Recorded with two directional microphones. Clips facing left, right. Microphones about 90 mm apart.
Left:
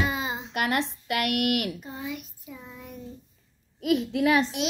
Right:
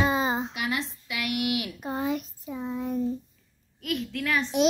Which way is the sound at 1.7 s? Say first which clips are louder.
Right 7 dB; 65° right (ahead or behind).